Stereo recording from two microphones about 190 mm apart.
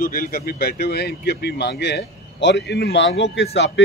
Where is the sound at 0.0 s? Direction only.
50° left (ahead or behind).